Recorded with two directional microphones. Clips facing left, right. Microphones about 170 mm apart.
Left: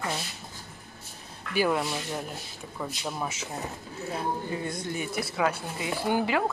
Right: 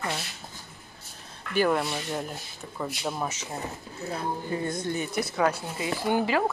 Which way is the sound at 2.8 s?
10° right (ahead or behind).